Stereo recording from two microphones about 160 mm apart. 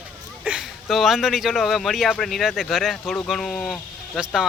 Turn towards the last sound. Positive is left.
turn(degrees=0)  # may be behind; listen again after turning